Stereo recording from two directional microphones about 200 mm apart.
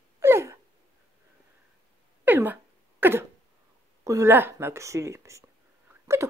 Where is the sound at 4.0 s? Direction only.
15° right (ahead or behind).